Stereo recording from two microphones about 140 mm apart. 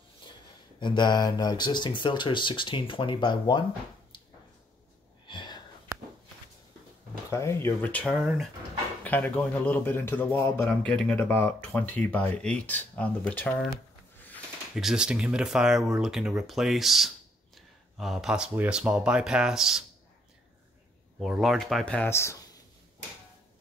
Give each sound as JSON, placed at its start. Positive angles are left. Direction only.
{"t": 0.7, "sound": "speech", "side_deg": 35}
{"t": 5.2, "sound": "sniff", "side_deg": 35}
{"t": 7.2, "sound": "speech", "side_deg": 20}
{"t": 9.0, "sound": "speech", "side_deg": 10}
{"t": 14.8, "sound": "speech", "side_deg": -5}
{"t": 21.2, "sound": "speech", "side_deg": 0}